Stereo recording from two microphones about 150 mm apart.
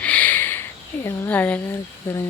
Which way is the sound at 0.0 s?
10° left (ahead or behind).